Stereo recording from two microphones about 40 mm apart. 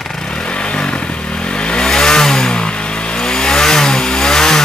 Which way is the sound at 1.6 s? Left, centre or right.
Left.